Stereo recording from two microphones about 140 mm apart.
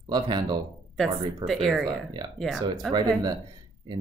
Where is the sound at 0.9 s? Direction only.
Centre (ahead or behind).